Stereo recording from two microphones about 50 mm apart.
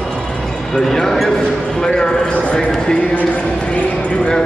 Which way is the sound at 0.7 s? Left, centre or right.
Centre.